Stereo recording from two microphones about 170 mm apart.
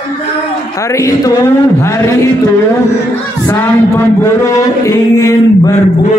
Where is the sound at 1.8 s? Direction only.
15° left (ahead or behind).